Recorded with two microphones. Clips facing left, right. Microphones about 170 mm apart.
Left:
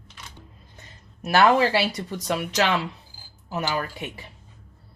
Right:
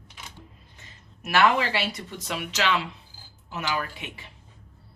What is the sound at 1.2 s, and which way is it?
Speech, 35° left (ahead or behind).